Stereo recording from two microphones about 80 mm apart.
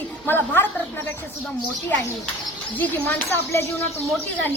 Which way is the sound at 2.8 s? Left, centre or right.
Left.